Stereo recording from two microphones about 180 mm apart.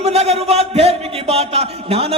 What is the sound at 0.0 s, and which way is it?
Speech, 35° right (ahead or behind).